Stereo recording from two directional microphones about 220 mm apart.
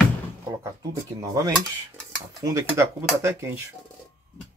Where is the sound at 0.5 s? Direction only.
15° right (ahead or behind).